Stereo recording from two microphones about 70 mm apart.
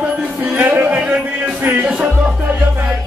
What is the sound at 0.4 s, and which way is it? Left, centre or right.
Music, right.